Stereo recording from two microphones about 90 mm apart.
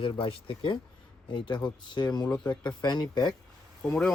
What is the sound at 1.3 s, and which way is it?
Speech, 60° left (ahead or behind).